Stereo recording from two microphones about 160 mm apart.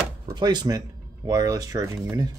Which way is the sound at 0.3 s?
25° right (ahead or behind).